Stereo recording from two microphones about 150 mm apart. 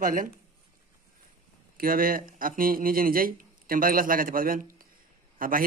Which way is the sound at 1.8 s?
70° right (ahead or behind).